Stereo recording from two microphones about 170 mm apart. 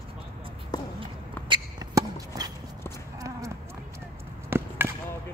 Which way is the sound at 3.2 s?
20° right (ahead or behind).